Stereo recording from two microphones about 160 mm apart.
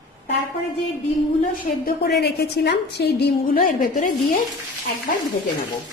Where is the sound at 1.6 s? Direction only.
70° left (ahead or behind); by 3.2 s 90° left.